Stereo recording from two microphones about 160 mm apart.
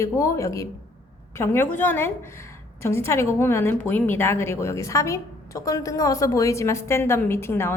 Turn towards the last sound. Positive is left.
turn(degrees=15)  # may be behind; listen again after turning